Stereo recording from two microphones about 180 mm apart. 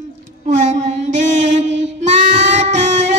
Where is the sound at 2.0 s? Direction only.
40° right (ahead or behind).